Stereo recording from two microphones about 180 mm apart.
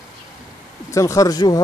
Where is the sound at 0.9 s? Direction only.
15° left (ahead or behind).